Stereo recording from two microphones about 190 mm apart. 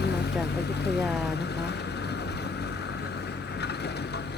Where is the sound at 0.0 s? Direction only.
60° left (ahead or behind).